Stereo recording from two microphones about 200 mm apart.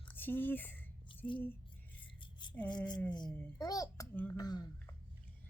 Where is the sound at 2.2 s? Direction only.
25° left (ahead or behind).